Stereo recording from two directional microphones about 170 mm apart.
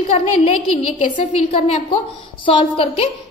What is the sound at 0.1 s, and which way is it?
Speech, 35° left (ahead or behind).